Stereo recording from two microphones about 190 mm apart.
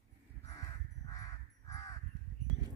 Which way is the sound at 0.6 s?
20° left (ahead or behind).